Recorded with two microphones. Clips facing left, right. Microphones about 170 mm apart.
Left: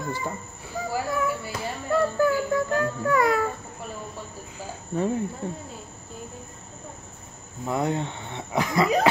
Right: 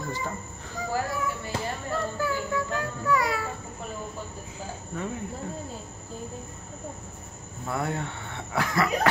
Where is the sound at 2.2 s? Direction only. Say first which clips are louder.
Left 6 dB; 50° left (ahead or behind).